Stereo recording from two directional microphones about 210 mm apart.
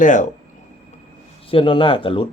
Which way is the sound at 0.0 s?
35° left (ahead or behind).